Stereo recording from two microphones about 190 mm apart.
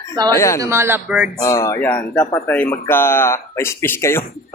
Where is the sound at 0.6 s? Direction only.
15° right (ahead or behind).